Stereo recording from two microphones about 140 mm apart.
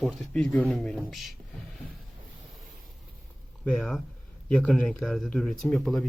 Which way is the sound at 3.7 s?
5° left (ahead or behind).